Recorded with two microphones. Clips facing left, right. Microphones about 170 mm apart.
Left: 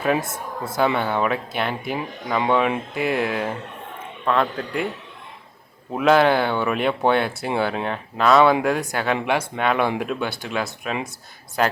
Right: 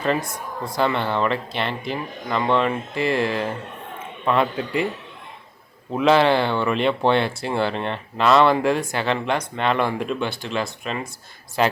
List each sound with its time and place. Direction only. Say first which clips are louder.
0.2 s speech: left 1 dB; 25° left (ahead or behind)
0.8 s speech: left 1 dB; 5° left (ahead or behind)
5.9 s speech: even; centre (ahead or behind)